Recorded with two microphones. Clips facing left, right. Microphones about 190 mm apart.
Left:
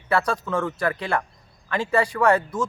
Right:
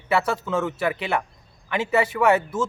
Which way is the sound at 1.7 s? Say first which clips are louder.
Even; 20° right (ahead or behind).